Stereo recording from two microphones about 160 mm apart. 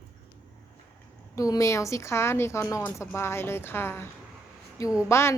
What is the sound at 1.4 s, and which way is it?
A woman's voice, 20° left (ahead or behind).